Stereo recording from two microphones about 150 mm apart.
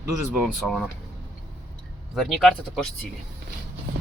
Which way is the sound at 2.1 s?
Centre (ahead or behind).